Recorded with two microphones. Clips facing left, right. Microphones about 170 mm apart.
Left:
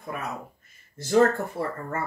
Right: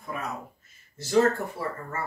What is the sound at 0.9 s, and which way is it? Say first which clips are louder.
Speech: left 2 dB; 55° left (ahead or behind).